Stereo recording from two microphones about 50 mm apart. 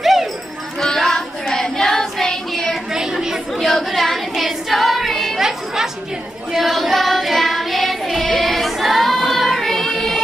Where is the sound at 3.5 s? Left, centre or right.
Centre.